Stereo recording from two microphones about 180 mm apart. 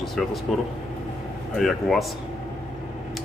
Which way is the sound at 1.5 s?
Centre (ahead or behind).